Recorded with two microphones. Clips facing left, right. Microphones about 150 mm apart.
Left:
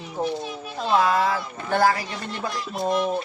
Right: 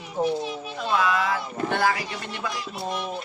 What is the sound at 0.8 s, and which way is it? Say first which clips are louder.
Speech: left 4 dB; 35° left (ahead or behind).